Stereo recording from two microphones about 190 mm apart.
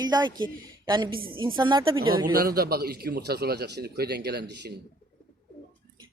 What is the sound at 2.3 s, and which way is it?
A man's voice, 50° right (ahead or behind).